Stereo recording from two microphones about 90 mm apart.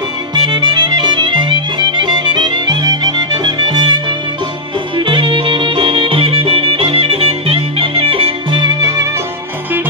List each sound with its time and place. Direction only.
0.3 s music: 50° right (ahead or behind)
4.9 s music: 70° right (ahead or behind)
8.8 s music: 35° right (ahead or behind)